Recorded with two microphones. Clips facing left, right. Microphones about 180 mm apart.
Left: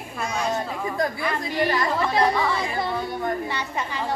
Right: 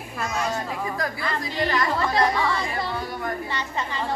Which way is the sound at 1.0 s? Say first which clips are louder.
Left 3 dB; 15° left (ahead or behind).